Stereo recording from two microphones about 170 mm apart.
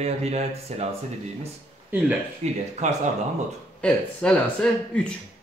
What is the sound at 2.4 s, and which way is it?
Speech, 40° right (ahead or behind).